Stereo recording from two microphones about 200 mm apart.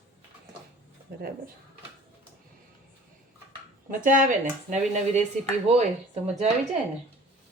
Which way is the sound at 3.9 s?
40° right (ahead or behind).